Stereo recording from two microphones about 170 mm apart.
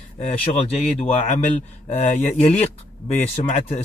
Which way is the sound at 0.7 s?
40° left (ahead or behind).